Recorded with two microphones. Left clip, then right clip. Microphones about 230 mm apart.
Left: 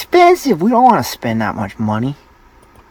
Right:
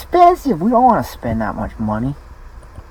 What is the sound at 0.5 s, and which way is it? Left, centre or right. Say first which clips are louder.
Speech: left 2 dB; left.